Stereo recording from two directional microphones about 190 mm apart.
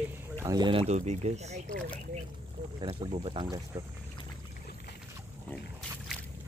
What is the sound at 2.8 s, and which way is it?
Speech, 25° right (ahead or behind).